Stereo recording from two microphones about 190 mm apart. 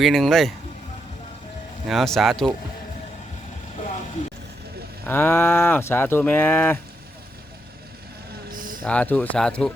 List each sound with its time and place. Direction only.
0.0 s speech: centre (ahead or behind)
1.9 s speech: centre (ahead or behind)
5.0 s speech: 10° left (ahead or behind)
8.5 s a sound: 45° right (ahead or behind)
8.8 s speech: 5° left (ahead or behind)